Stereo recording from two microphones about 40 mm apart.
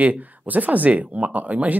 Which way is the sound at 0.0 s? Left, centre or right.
Right.